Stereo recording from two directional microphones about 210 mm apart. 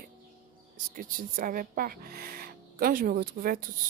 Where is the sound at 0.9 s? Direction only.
40° right (ahead or behind).